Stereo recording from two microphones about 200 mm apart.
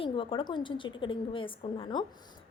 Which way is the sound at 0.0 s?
25° left (ahead or behind).